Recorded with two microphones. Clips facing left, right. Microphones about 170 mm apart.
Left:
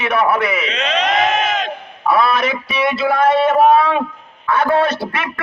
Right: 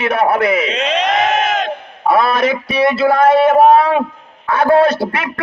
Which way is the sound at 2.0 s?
40° right (ahead or behind).